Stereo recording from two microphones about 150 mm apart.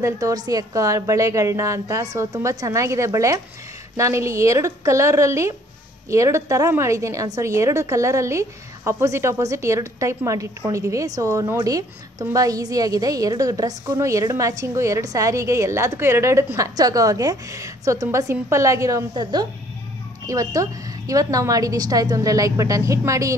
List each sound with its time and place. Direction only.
0.0 s a woman's voice: 25° right (ahead or behind)